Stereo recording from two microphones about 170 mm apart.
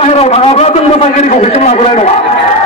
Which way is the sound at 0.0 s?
35° left (ahead or behind).